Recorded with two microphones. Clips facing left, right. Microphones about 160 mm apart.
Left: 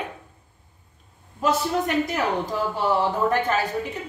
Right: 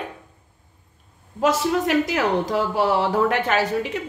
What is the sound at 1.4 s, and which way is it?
Speech, 90° right.